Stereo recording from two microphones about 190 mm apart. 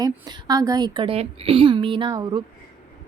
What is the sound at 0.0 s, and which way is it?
A woman's voice, 20° right (ahead or behind).